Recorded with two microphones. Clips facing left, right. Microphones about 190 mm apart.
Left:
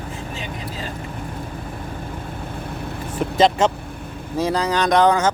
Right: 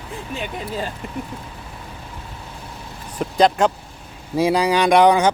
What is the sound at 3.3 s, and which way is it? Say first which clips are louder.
Speech: even; centre (ahead or behind).